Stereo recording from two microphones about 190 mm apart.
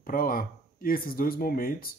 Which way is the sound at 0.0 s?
50° left (ahead or behind).